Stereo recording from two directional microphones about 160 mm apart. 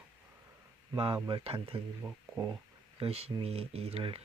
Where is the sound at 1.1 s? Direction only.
30° right (ahead or behind).